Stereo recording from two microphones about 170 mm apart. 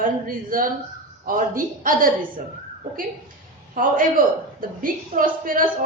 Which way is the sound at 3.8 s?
55° right (ahead or behind).